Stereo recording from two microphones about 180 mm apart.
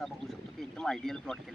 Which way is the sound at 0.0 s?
Centre (ahead or behind).